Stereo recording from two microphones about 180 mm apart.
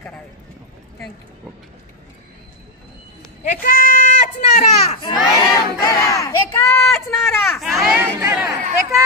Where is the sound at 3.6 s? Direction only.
50° left (ahead or behind).